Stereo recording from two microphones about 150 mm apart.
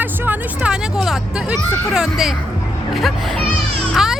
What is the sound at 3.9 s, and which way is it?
Music, centre (ahead or behind).